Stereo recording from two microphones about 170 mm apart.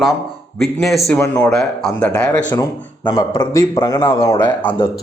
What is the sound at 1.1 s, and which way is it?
A man's voice, 15° left (ahead or behind).